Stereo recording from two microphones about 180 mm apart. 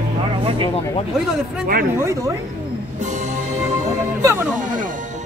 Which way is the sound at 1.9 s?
15° right (ahead or behind).